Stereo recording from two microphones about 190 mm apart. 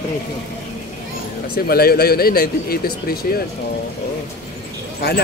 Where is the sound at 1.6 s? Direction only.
55° left (ahead or behind).